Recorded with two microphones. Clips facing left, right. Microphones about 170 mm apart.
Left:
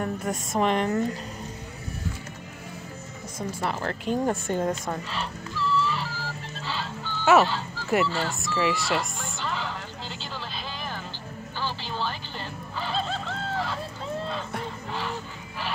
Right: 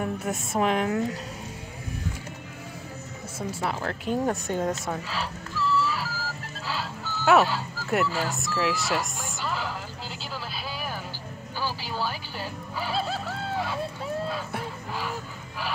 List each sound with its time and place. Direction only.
0.0 s a woman's voice: 5° right (ahead or behind)
3.3 s a woman's voice: 5° right (ahead or behind)
5.8 s music: 5° right (ahead or behind)
8.1 s speech: 5° right (ahead or behind)
11.6 s music: 10° right (ahead or behind)